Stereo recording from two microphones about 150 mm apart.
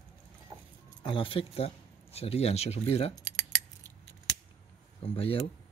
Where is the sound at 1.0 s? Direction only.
35° left (ahead or behind).